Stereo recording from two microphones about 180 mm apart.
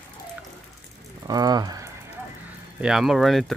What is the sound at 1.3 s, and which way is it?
Speech, 20° right (ahead or behind).